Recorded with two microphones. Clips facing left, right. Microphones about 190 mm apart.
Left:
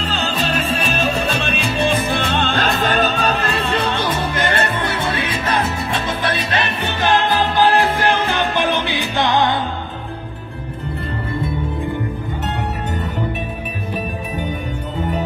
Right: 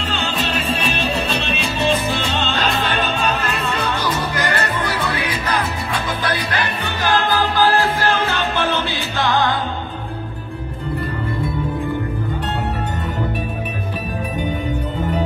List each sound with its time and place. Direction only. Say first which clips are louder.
0.0 s music: left 1 dB; 40° left (ahead or behind); by 9.6 s 20° left (ahead or behind)